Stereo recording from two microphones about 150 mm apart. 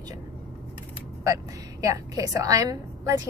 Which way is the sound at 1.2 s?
20° right (ahead or behind).